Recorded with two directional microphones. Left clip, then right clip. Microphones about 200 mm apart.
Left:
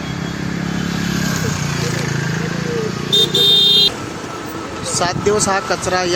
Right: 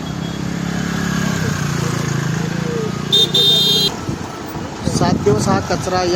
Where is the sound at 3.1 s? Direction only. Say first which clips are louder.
Even; 55° right (ahead or behind).